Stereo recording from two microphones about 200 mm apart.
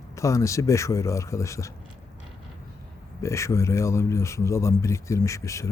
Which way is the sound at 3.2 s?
15° left (ahead or behind).